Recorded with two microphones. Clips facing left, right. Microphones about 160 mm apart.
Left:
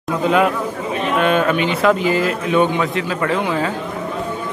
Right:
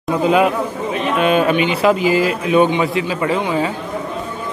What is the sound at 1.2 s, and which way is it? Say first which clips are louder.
A man's voice: right 3 dB; 10° right (ahead or behind).